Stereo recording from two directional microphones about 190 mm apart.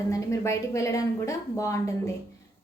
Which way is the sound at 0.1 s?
15° left (ahead or behind).